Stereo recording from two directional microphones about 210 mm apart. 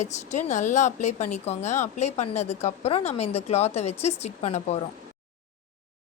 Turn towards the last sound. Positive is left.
turn(degrees=30)  # may be behind; listen again after turning